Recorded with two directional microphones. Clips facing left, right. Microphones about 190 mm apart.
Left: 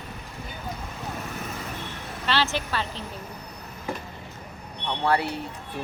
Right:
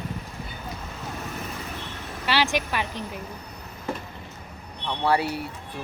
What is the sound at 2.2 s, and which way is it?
Speech, 10° right (ahead or behind).